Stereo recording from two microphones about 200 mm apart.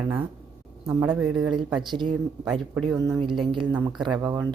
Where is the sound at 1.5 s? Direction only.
25° right (ahead or behind).